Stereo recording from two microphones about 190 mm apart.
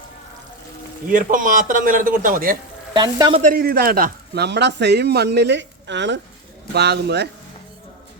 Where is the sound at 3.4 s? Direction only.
45° right (ahead or behind); by 7.3 s 60° right (ahead or behind).